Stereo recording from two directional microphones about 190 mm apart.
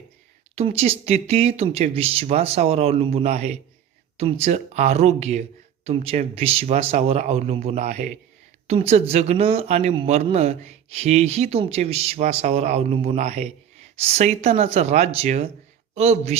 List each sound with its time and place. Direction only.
0.5 s speech: 30° right (ahead or behind)